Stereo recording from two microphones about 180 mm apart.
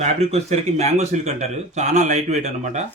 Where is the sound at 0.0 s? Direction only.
35° right (ahead or behind).